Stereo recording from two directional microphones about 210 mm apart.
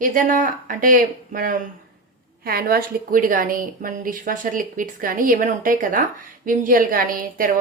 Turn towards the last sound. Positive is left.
turn(degrees=-40)  # may be behind; listen again after turning